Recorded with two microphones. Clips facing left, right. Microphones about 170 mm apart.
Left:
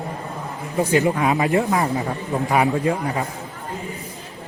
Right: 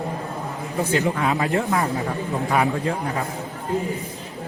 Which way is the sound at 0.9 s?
15° left (ahead or behind).